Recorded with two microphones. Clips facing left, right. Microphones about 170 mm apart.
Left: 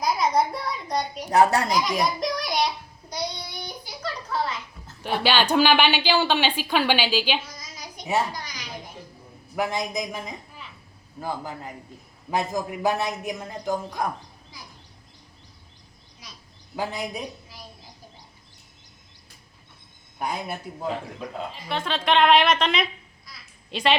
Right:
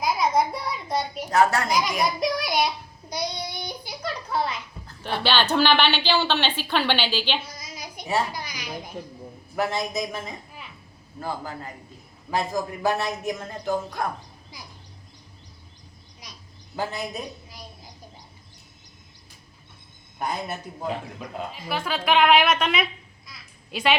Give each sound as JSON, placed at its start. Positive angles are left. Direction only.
{"t": 0.0, "sound": "a sound", "side_deg": 0}
{"t": 1.3, "sound": "a woman's voice", "side_deg": 15}
{"t": 1.6, "sound": "a child's voice", "side_deg": 0}
{"t": 5.0, "sound": "a woman's voice", "side_deg": 10}
{"t": 7.4, "sound": "a sound", "side_deg": -10}
{"t": 8.3, "sound": "a child's voice", "side_deg": -10}
{"t": 9.6, "sound": "a woman's voice", "side_deg": 15}
{"t": 16.7, "sound": "a woman's voice", "side_deg": 15}
{"t": 20.1, "sound": "a woman's voice", "side_deg": 10}
{"t": 21.5, "sound": "a child's voice", "side_deg": -5}